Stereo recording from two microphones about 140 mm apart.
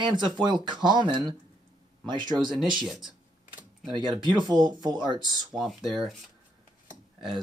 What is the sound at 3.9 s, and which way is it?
Speech, 35° right (ahead or behind).